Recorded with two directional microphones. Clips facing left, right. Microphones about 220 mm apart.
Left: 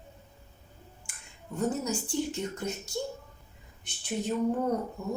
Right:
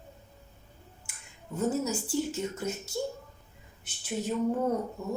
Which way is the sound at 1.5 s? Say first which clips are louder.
Right 1 dB; 5° right (ahead or behind).